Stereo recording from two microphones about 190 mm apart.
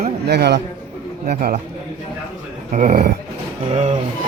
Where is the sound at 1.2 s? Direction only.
45° right (ahead or behind).